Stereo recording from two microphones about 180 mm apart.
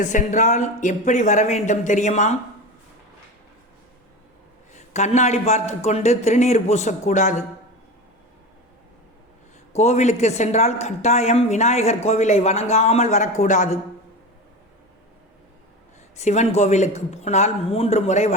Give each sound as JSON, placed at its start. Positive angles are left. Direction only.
{"t": 0.0, "sound": "a woman's voice", "side_deg": 45}
{"t": 4.7, "sound": "a woman's voice", "side_deg": 40}
{"t": 9.7, "sound": "a woman's voice", "side_deg": 40}
{"t": 16.1, "sound": "a woman's voice", "side_deg": 40}